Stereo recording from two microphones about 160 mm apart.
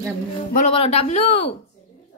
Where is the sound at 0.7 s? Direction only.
35° left (ahead or behind).